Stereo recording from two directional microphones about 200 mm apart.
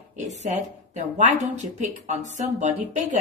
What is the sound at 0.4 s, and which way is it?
Speech, 35° right (ahead or behind).